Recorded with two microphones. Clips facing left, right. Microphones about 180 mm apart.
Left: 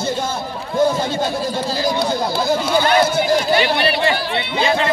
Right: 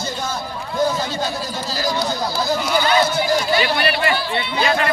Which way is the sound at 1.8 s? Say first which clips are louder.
Left 1 dB; 25° left (ahead or behind).